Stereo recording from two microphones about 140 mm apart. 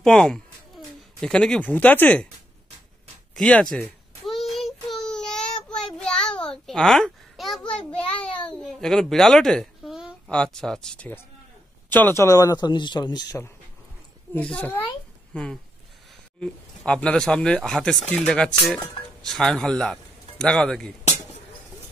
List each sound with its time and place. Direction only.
0.0 s speech: 5° left (ahead or behind)
3.3 s speech: 5° left (ahead or behind)
4.2 s child singing: centre (ahead or behind)
10.3 s speech: 5° left (ahead or behind); by 13.4 s 30° left (ahead or behind)
14.3 s a man's voice: 10° left (ahead or behind)